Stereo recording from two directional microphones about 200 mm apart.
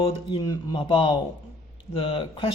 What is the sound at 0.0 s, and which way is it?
A man's voice, 25° left (ahead or behind).